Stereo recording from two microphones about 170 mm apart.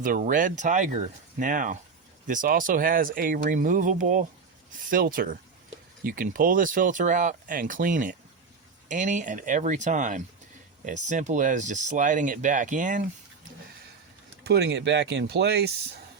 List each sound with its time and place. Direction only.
0.0 s speech: 55° right (ahead or behind)
14.4 s speech: 75° right (ahead or behind)